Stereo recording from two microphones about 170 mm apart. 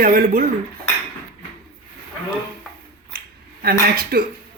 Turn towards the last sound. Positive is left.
turn(degrees=-60)  # may be behind; listen again after turning